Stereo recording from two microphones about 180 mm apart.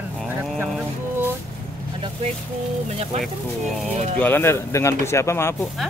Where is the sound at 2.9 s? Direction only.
35° right (ahead or behind).